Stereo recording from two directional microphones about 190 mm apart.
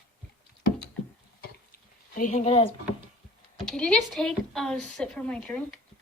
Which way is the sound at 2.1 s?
40° left (ahead or behind).